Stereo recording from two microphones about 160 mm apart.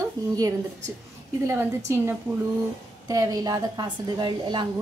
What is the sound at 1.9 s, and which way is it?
A woman's voice, 15° right (ahead or behind).